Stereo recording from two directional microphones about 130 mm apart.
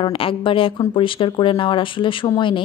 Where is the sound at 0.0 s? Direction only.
45° left (ahead or behind).